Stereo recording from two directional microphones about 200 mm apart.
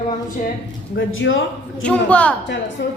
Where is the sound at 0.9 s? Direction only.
70° left (ahead or behind).